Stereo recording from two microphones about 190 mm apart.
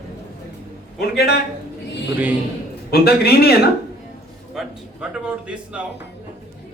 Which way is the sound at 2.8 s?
55° left (ahead or behind).